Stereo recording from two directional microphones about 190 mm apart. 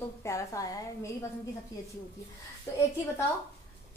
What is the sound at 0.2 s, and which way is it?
Speech, 15° left (ahead or behind).